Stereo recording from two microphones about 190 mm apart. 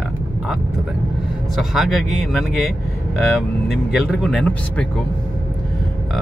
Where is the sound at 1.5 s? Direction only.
Centre (ahead or behind).